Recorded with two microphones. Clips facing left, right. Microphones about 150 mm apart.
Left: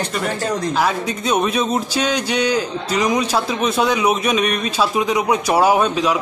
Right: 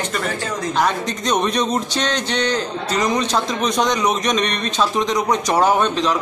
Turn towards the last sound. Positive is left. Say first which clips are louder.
# left 1 dB
turn(degrees=10)  # may be behind; listen again after turning